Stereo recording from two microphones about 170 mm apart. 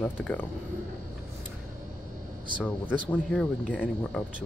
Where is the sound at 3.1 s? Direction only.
5° left (ahead or behind).